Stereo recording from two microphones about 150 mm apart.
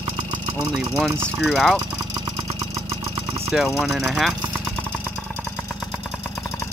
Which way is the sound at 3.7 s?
Centre (ahead or behind).